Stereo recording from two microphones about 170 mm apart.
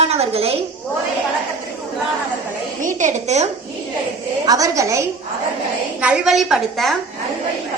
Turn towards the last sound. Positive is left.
turn(degrees=0)  # may be behind; listen again after turning